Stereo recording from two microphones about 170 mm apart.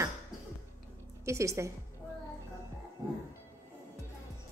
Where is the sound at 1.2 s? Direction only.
15° right (ahead or behind).